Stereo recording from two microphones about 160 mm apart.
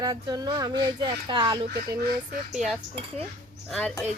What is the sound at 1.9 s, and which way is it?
Speech, 75° right (ahead or behind).